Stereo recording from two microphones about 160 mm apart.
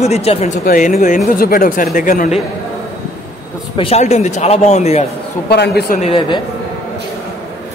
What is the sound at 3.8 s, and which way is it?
Speech, 40° left (ahead or behind).